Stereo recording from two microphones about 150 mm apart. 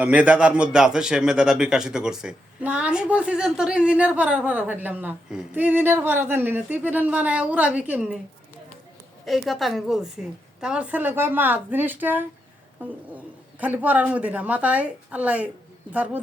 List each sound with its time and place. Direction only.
0.0 s a man's voice: 10° right (ahead or behind)
9.2 s a woman's voice: centre (ahead or behind)